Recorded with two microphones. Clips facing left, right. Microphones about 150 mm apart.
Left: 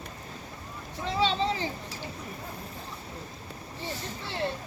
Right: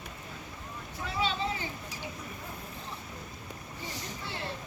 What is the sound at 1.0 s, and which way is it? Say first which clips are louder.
Vehicle: left 5 dB; 30° left (ahead or behind).